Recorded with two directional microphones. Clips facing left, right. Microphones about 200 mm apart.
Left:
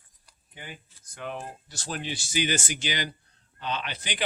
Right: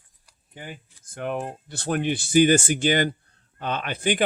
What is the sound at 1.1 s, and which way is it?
Speech, 55° right (ahead or behind).